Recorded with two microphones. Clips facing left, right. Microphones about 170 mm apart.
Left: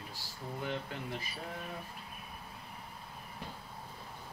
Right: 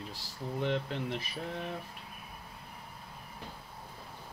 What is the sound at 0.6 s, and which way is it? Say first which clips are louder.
Speech: right 7 dB; 90° right.